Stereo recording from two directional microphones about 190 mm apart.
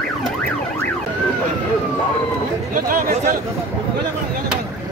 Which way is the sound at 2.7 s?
45° right (ahead or behind).